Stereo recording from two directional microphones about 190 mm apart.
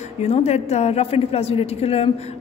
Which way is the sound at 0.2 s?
35° left (ahead or behind).